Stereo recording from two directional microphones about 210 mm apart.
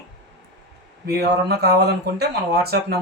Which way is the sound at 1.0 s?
50° right (ahead or behind).